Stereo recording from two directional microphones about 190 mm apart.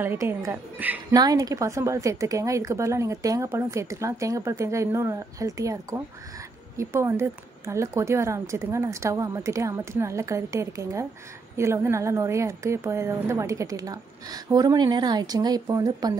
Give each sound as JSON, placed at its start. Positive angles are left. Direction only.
{"t": 0.0, "sound": "a woman's voice", "side_deg": -10}
{"t": 1.1, "sound": "a woman's voice", "side_deg": -20}